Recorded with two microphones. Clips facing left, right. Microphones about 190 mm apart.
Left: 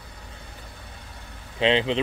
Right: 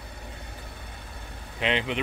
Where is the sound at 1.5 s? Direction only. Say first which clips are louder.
Left 6 dB; 30° left (ahead or behind).